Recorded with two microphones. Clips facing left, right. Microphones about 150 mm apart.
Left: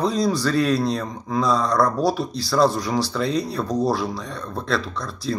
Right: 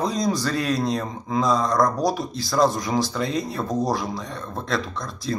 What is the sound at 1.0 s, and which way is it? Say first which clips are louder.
Speech: even; 20° right (ahead or behind).